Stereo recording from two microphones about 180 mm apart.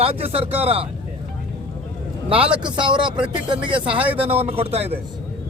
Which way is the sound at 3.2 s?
25° right (ahead or behind).